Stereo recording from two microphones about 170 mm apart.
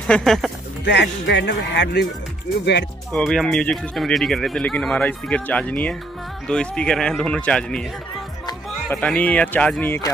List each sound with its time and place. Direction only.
0.0 s speech: 5° left (ahead or behind)
0.8 s speech: 80° left
3.1 s speech: 5° left (ahead or behind)
8.8 s speech: 5° left (ahead or behind)